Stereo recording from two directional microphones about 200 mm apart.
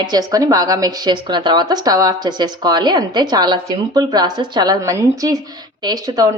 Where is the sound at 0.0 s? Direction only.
20° right (ahead or behind).